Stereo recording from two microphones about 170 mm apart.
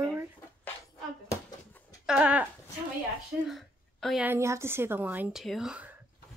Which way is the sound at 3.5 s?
Centre (ahead or behind).